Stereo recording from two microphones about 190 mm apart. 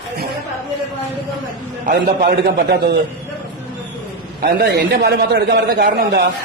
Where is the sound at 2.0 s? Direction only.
55° right (ahead or behind).